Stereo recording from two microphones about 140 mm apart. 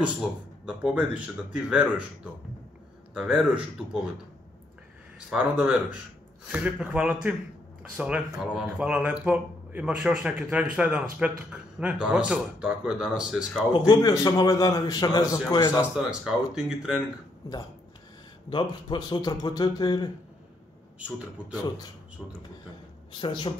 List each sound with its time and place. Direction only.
0.7 s speech: 10° right (ahead or behind)
3.2 s speech: 5° right (ahead or behind)
5.3 s speech: 10° right (ahead or behind)
13.7 s a man's voice: 30° left (ahead or behind)
16.0 s speech: 5° right (ahead or behind)
18.5 s speech: 35° left (ahead or behind)
23.1 s speech: 35° left (ahead or behind)